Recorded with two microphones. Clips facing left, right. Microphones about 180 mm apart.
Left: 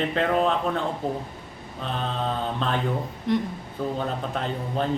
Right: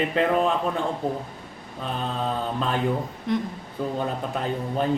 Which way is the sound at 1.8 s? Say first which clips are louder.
Even; 5° right (ahead or behind).